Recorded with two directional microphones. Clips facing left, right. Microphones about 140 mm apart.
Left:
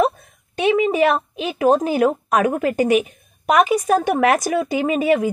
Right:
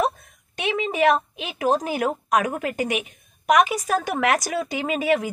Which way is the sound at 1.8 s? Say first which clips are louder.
Left 7 dB; 30° left (ahead or behind).